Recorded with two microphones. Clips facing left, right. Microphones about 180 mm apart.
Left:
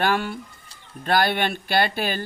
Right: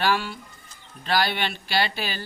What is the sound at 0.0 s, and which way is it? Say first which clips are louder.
Speech: left 2 dB; 55° left (ahead or behind).